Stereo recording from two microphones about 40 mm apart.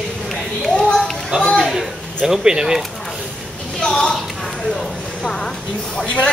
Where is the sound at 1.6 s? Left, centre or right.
Centre.